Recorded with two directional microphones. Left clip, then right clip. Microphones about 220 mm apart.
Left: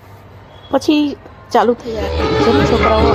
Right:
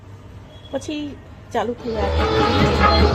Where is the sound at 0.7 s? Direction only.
20° left (ahead or behind).